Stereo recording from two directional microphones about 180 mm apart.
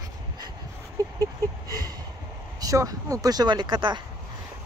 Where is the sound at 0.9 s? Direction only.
20° right (ahead or behind).